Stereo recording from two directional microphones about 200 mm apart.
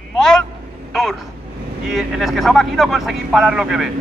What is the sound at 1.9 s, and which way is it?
Speech, centre (ahead or behind).